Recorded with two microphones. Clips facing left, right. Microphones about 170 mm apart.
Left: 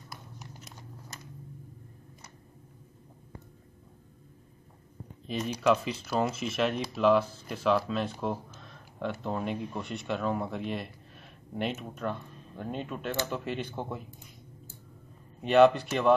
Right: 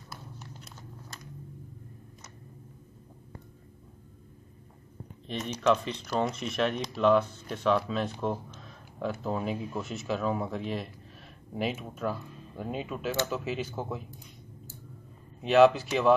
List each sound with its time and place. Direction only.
5.2 s speech: 5° left (ahead or behind)
15.4 s speech: centre (ahead or behind)